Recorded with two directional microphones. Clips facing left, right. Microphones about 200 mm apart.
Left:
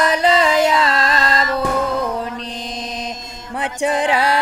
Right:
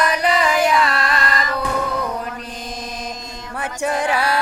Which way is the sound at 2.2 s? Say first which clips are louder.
Left 3 dB; 25° left (ahead or behind).